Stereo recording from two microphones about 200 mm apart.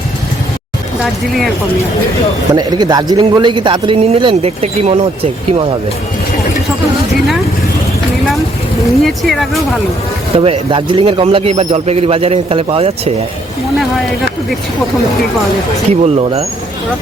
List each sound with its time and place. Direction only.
2.5 s a man's voice: 20° right (ahead or behind)
9.0 s speech: centre (ahead or behind)
10.3 s a man's voice: 30° right (ahead or behind)
15.9 s speech: 30° right (ahead or behind)